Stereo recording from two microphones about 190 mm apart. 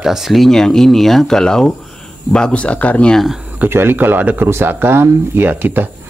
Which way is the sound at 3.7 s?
10° right (ahead or behind).